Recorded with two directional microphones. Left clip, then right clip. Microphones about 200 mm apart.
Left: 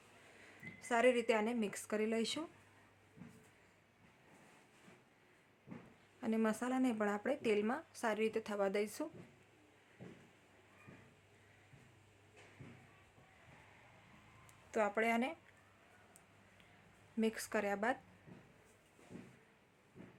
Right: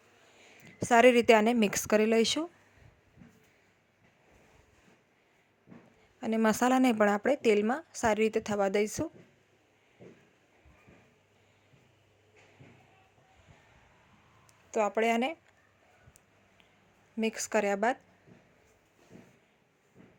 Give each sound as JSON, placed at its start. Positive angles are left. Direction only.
{"t": 0.8, "sound": "a woman's voice", "side_deg": -40}
{"t": 6.1, "sound": "a sound", "side_deg": -30}
{"t": 6.4, "sound": "a woman's voice", "side_deg": -45}
{"t": 14.7, "sound": "a woman's voice", "side_deg": -25}
{"t": 17.2, "sound": "a woman's voice", "side_deg": -30}